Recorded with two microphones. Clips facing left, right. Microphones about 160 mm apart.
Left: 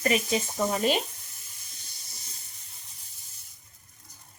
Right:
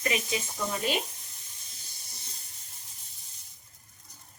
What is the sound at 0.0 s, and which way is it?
Speech, 45° left (ahead or behind).